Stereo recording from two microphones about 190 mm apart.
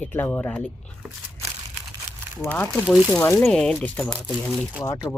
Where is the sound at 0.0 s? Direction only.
10° left (ahead or behind).